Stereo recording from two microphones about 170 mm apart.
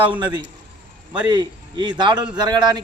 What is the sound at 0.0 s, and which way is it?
A man's voice, 25° right (ahead or behind).